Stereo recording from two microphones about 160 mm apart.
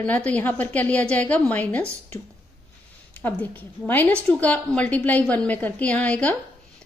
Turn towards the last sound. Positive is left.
turn(degrees=10)  # may be behind; listen again after turning